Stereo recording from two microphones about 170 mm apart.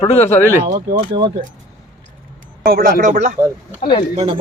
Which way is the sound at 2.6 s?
60° right (ahead or behind).